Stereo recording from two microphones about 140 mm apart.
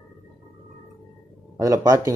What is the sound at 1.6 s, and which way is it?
Speech, 25° right (ahead or behind).